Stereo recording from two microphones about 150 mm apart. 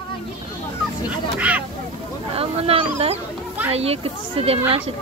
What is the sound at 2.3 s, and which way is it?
Speech, 40° right (ahead or behind).